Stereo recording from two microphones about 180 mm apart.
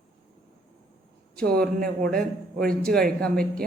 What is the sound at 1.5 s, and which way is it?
Speech, 55° right (ahead or behind).